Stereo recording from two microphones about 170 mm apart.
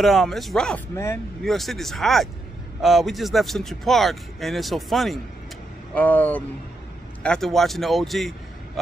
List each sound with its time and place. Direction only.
0.0 s speech: centre (ahead or behind)